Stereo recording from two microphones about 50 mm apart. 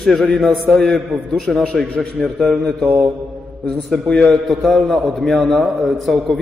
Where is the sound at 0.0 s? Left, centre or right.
Centre.